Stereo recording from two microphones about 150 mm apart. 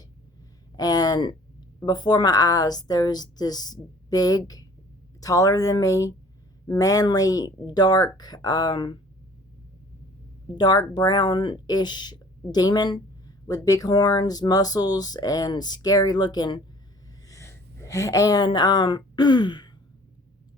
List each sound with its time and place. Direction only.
0.8 s speech: 25° left (ahead or behind)
10.5 s a woman's voice: 30° left (ahead or behind)